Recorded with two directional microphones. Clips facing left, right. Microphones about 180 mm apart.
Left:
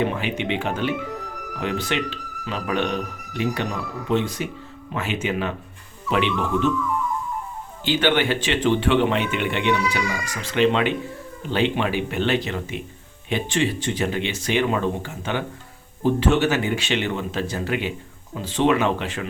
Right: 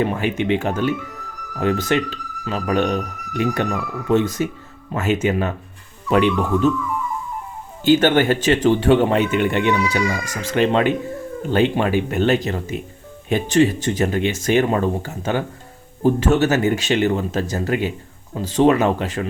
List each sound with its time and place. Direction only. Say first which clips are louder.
0.1 s a man's voice: right 5 dB; 45° right (ahead or behind)
7.9 s a man's voice: right 6 dB; 45° right (ahead or behind)